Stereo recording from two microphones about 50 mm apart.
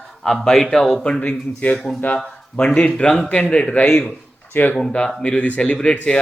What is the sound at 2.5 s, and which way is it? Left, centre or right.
A man's voice, left.